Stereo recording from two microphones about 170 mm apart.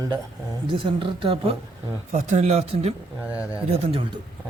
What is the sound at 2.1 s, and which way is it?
A woman's voice, 45° right (ahead or behind).